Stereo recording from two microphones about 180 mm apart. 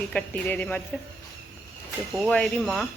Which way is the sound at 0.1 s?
10° left (ahead or behind).